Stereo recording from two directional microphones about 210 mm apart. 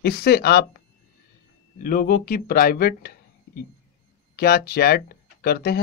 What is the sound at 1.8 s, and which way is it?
Speech, 40° left (ahead or behind).